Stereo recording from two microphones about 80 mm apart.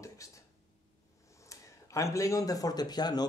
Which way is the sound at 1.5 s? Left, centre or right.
Left.